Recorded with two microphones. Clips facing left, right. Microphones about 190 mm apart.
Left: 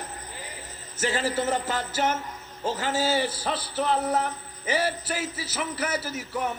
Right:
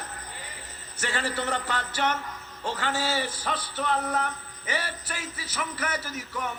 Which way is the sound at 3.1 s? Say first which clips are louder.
Left 3 dB; 30° left (ahead or behind).